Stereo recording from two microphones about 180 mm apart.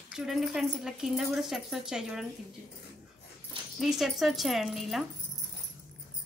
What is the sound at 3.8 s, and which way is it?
Speech, centre (ahead or behind).